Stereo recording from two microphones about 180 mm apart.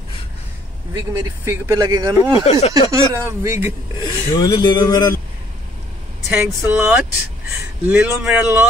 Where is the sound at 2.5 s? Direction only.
35° left (ahead or behind).